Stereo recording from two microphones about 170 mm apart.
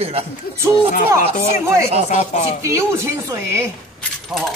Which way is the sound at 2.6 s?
15° right (ahead or behind).